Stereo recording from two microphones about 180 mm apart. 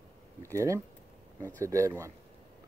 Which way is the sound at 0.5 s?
15° right (ahead or behind).